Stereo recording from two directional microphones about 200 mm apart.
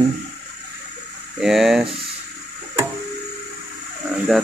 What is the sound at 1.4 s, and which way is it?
Speech, centre (ahead or behind).